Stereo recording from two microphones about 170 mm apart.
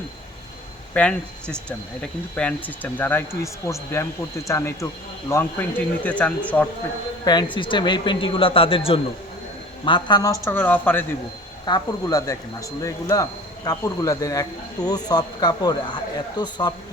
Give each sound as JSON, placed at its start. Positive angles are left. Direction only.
{"t": 0.9, "sound": "speech", "side_deg": 10}
{"t": 7.5, "sound": "speech", "side_deg": 30}
{"t": 11.6, "sound": "speech", "side_deg": 25}